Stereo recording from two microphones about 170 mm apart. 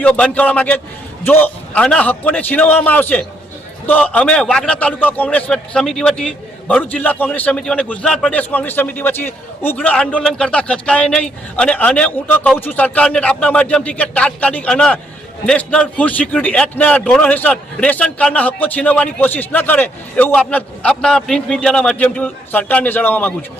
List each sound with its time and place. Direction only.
0.0 s a man's voice: 5° left (ahead or behind)